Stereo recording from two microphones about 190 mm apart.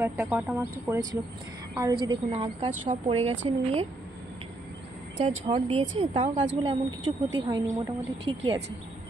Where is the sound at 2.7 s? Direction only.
40° right (ahead or behind).